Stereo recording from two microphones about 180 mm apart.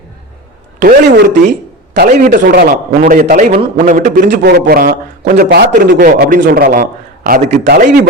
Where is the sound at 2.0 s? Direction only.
45° right (ahead or behind).